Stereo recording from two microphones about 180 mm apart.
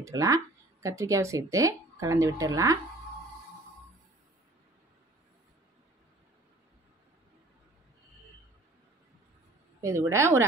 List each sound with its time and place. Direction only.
0.0 s speech: 20° right (ahead or behind)
9.8 s speech: 15° right (ahead or behind)